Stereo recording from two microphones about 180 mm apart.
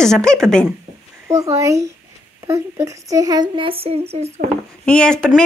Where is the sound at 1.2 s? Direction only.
15° right (ahead or behind); by 4.3 s 35° right (ahead or behind).